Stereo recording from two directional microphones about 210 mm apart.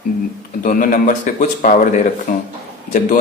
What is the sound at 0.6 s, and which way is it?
Speech, 40° left (ahead or behind).